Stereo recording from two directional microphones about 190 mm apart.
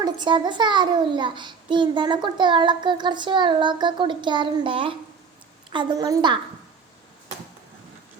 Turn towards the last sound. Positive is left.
turn(degrees=-25)  # may be behind; listen again after turning